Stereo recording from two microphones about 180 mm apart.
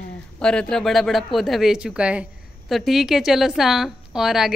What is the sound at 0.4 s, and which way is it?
A woman's voice, 5° left (ahead or behind).